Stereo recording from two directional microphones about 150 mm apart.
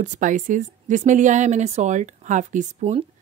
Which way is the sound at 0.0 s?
55° right (ahead or behind).